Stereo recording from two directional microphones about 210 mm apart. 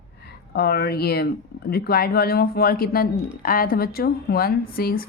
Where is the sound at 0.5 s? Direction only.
50° left (ahead or behind).